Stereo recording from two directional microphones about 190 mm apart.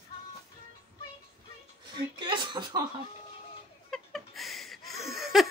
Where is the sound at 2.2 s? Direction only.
25° right (ahead or behind).